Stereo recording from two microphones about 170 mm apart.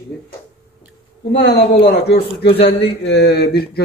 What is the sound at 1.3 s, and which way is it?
Speech, 90° left.